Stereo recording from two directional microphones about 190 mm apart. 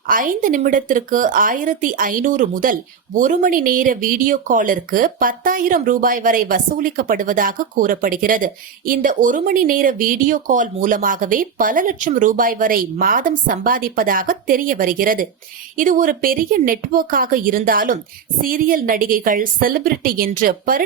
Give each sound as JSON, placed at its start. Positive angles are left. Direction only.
{"t": 0.1, "sound": "speech", "side_deg": -45}